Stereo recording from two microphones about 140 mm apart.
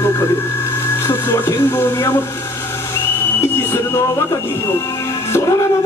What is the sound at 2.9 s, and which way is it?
Whistle, 15° left (ahead or behind).